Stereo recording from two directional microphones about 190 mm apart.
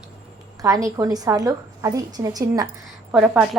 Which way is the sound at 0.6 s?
15° right (ahead or behind).